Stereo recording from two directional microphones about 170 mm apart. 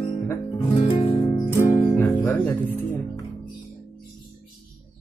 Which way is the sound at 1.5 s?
20° left (ahead or behind).